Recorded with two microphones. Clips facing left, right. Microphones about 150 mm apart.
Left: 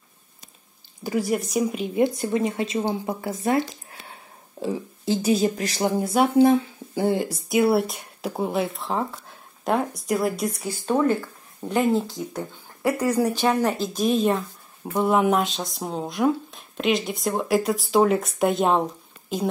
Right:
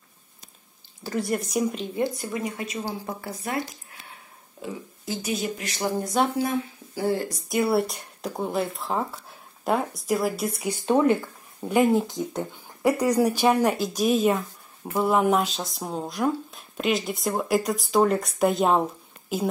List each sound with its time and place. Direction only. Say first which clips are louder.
1.0 s speech: left 3 dB; 5° left (ahead or behind)
2.0 s speech: left 8 dB; 20° left (ahead or behind)
5.9 s speech: left 2 dB; 10° left (ahead or behind)
6.3 s speech: left 9 dB; 25° left (ahead or behind)
7.2 s speech: left 4 dB; centre (ahead or behind)
10.6 s speech: right 2 dB; 20° right (ahead or behind)